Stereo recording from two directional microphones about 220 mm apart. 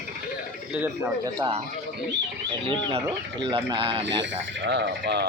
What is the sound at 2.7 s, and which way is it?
Speech, 20° right (ahead or behind).